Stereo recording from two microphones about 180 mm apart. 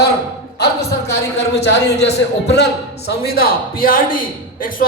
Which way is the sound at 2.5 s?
65° left (ahead or behind).